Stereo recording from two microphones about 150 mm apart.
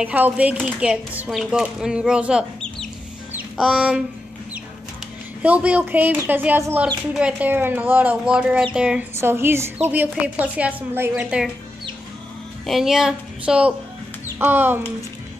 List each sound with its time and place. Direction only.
0.0 s speech: 10° right (ahead or behind)
3.3 s a sound: 5° right (ahead or behind)
5.4 s speech: 10° right (ahead or behind)
12.6 s a woman's voice: centre (ahead or behind)